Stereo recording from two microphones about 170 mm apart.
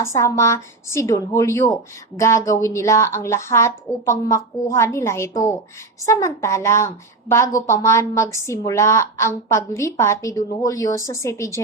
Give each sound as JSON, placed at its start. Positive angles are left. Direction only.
{"t": 0.0, "sound": "a woman's voice", "side_deg": 20}